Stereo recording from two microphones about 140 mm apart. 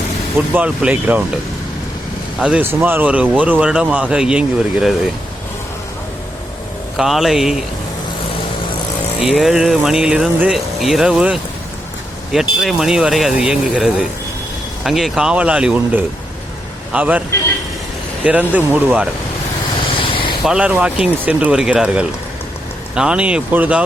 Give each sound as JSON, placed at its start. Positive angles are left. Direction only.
{"t": 0.3, "sound": "speech", "side_deg": -10}
{"t": 2.4, "sound": "speech", "side_deg": -10}
{"t": 6.9, "sound": "speech", "side_deg": 0}
{"t": 9.2, "sound": "speech", "side_deg": 0}
{"t": 19.9, "sound": "a sound", "side_deg": 40}
{"t": 20.4, "sound": "speech", "side_deg": -5}